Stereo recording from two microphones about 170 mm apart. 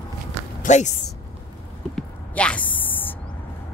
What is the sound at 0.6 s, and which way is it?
Speech, 45° left (ahead or behind).